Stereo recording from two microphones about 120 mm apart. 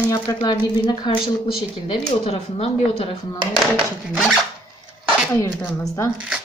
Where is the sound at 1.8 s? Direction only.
55° left (ahead or behind).